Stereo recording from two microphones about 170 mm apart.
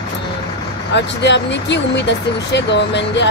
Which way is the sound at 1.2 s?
90° left.